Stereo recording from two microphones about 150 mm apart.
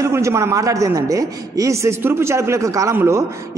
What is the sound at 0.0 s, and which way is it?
A man's voice, 20° right (ahead or behind).